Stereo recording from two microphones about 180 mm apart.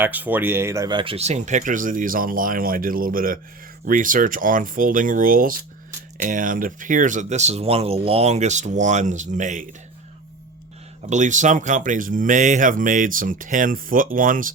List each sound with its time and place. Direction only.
0.0 s speech: 10° right (ahead or behind); by 9.6 s 40° right (ahead or behind)
11.1 s speech: 45° right (ahead or behind)